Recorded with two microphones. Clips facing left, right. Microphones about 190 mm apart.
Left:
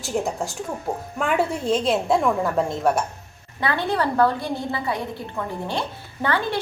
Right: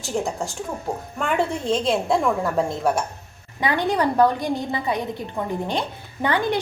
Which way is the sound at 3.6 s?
15° right (ahead or behind).